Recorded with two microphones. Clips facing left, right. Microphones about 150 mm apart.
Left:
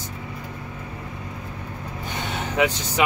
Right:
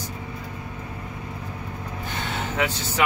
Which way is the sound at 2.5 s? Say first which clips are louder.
Left 5 dB; 15° left (ahead or behind).